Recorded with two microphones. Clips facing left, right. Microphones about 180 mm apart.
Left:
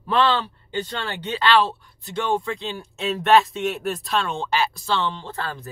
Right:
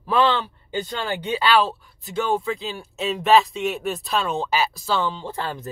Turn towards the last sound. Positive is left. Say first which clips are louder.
# right 2 dB
turn(degrees=-15)  # may be behind; listen again after turning